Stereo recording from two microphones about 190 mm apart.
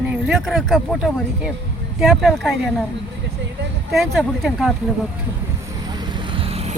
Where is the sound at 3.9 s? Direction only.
Centre (ahead or behind).